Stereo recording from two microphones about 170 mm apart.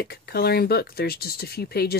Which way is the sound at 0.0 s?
65° left (ahead or behind).